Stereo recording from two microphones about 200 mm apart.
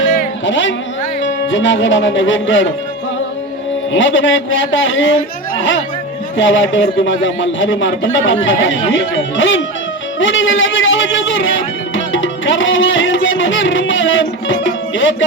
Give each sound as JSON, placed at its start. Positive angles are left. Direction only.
{"t": 0.4, "sound": "speech", "side_deg": 70}
{"t": 3.9, "sound": "speech", "side_deg": 70}